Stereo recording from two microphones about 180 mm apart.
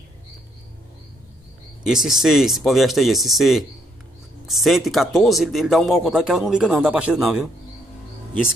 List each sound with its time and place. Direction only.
1.9 s a man's voice: centre (ahead or behind)